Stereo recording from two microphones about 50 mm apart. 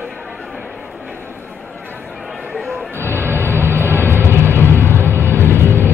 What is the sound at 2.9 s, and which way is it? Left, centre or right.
Music, right.